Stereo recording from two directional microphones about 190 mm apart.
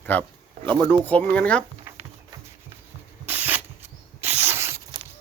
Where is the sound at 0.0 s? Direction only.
10° left (ahead or behind).